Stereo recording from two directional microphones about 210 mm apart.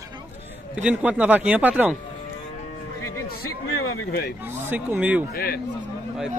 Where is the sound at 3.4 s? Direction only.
90° left.